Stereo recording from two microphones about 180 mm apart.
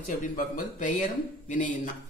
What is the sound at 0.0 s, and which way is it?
A man's voice, 45° left (ahead or behind).